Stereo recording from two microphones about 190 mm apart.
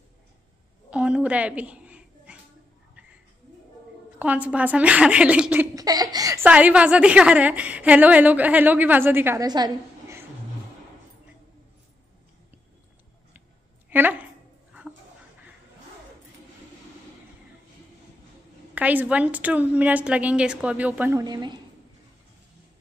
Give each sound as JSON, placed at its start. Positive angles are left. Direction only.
{"t": 0.8, "sound": "a sound", "side_deg": -5}
{"t": 4.2, "sound": "a woman's voice", "side_deg": -5}
{"t": 5.8, "sound": "a woman's voice", "side_deg": -20}
{"t": 13.8, "sound": "a sound", "side_deg": -10}
{"t": 14.7, "sound": "dog", "side_deg": -5}
{"t": 18.8, "sound": "a woman's voice", "side_deg": -10}
{"t": 21.2, "sound": "a woman's voice", "side_deg": -20}